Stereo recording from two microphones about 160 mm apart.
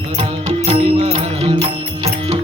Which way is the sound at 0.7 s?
40° right (ahead or behind).